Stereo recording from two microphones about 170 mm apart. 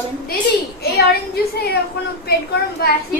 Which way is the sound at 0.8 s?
65° left (ahead or behind).